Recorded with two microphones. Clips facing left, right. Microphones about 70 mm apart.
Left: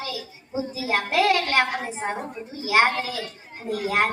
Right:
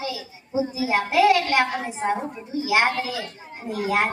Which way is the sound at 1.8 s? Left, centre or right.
Centre.